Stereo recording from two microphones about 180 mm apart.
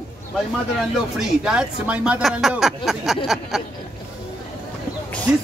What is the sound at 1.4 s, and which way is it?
Speech, 5° right (ahead or behind).